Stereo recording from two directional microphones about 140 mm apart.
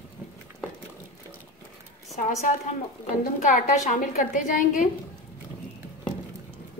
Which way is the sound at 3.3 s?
65° left (ahead or behind).